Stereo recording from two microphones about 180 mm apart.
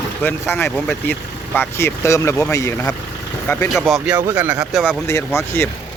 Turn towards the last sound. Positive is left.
turn(degrees=15)  # may be behind; listen again after turning